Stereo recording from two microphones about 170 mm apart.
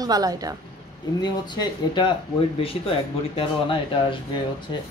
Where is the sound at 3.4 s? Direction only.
30° left (ahead or behind).